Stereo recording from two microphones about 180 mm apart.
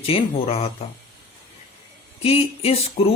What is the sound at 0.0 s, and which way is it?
Speech, 30° left (ahead or behind).